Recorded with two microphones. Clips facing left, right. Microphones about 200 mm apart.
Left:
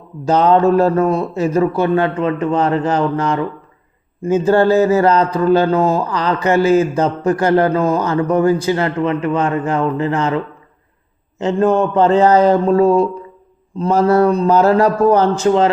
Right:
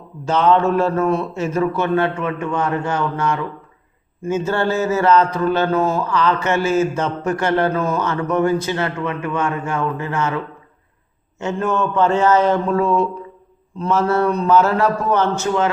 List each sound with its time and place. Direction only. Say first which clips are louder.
0.3 s speech: left 4 dB; 35° left (ahead or behind)